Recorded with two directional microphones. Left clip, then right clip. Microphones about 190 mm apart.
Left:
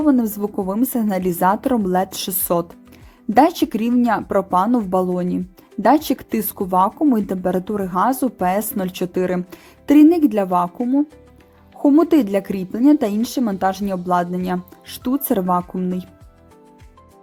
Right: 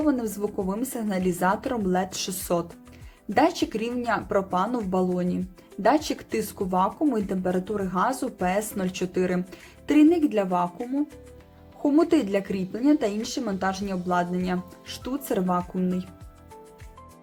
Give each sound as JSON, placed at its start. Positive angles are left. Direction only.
{"t": 0.0, "sound": "speech", "side_deg": 40}